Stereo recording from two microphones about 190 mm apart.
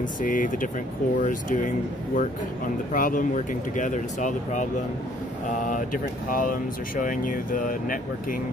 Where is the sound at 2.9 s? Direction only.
45° left (ahead or behind).